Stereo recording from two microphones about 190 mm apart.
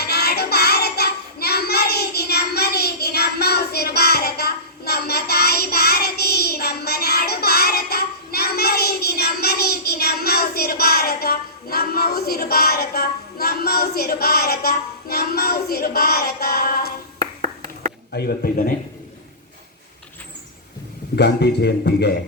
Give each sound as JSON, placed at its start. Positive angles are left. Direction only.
{"t": 0.0, "sound": "child singing", "side_deg": 55}
{"t": 18.1, "sound": "a sound", "side_deg": 55}
{"t": 21.2, "sound": "a man's voice", "side_deg": 60}